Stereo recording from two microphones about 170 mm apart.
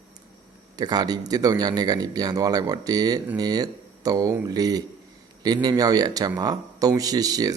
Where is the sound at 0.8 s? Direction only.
25° right (ahead or behind).